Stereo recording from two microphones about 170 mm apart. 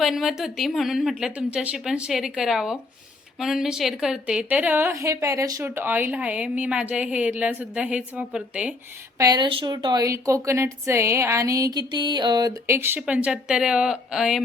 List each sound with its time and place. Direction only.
0.0 s a woman's voice: centre (ahead or behind)
9.1 s a woman's voice: 20° right (ahead or behind); by 14.4 s 5° right (ahead or behind)